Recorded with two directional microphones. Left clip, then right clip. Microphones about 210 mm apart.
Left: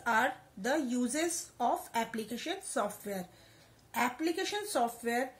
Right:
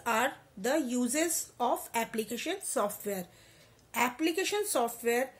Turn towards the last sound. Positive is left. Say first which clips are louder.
# right 2 dB
turn(degrees=-40)  # may be behind; listen again after turning